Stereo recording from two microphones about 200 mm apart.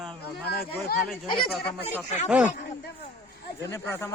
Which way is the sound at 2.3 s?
5° right (ahead or behind).